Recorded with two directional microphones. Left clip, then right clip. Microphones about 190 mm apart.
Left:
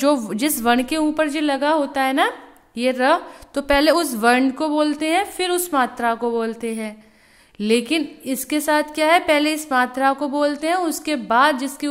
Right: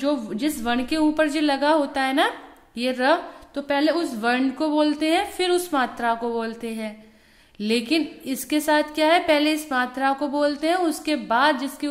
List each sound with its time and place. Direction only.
0.0 s a woman's voice: 40° left (ahead or behind); by 3.2 s 20° left (ahead or behind)
3.5 s a woman's voice: 35° left (ahead or behind)